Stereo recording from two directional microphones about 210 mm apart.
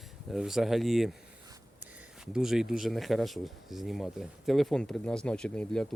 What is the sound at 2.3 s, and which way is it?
Speech, centre (ahead or behind).